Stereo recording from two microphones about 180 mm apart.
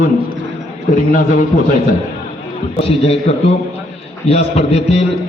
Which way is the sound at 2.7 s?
30° left (ahead or behind).